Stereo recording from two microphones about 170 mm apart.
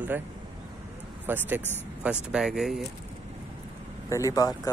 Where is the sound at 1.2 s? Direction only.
10° right (ahead or behind).